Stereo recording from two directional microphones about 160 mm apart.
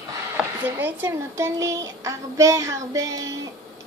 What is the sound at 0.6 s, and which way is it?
A woman's voice, 10° right (ahead or behind).